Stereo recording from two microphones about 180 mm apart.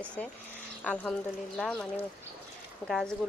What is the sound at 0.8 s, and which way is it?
Speech, 5° left (ahead or behind).